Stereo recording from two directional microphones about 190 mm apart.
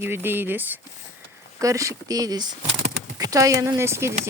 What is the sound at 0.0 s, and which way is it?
Speech, 10° right (ahead or behind).